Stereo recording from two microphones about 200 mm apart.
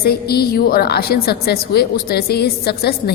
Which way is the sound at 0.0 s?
50° left (ahead or behind).